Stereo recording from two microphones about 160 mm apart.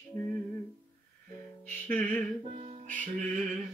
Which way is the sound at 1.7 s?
15° left (ahead or behind).